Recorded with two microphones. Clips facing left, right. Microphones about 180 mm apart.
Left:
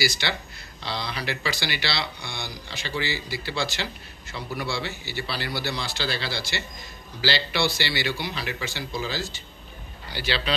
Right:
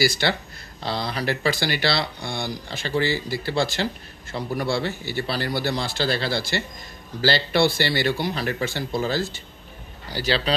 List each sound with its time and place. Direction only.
0.0 s speech: 50° right (ahead or behind)
10.0 s a man's voice: 40° right (ahead or behind)